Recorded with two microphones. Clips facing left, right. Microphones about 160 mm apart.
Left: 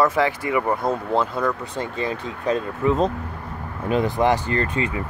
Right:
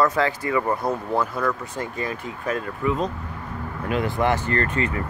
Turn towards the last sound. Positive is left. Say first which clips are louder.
# even
turn(degrees=15)  # may be behind; listen again after turning